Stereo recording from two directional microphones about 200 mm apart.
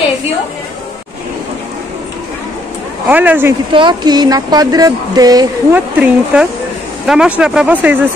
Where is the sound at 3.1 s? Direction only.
10° right (ahead or behind).